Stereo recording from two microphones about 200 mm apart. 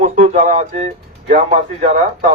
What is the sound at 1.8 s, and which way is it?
Speech, 35° right (ahead or behind).